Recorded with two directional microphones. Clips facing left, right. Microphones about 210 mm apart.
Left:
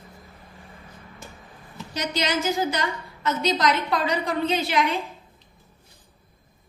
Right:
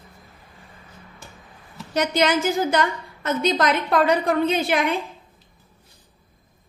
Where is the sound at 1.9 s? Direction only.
55° right (ahead or behind).